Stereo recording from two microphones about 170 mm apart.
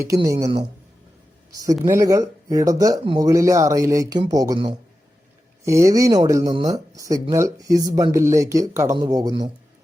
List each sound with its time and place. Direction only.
0.0 s speech: 20° right (ahead or behind)
3.0 s speech: 30° right (ahead or behind)
3.2 s speech: 20° right (ahead or behind)